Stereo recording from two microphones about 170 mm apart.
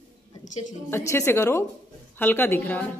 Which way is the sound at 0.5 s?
45° left (ahead or behind).